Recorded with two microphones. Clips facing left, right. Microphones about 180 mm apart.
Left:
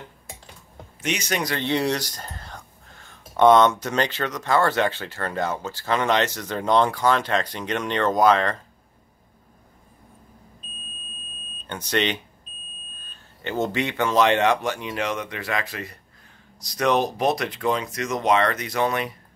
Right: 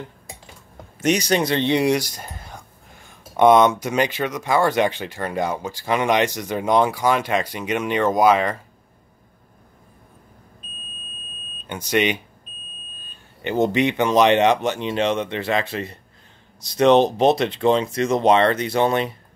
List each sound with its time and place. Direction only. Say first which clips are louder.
1.0 s speech: right 7 dB; 35° right (ahead or behind); by 8.5 s 10° right (ahead or behind)
11.6 s speech: right 4 dB; 10° right (ahead or behind); by 19.1 s 30° right (ahead or behind)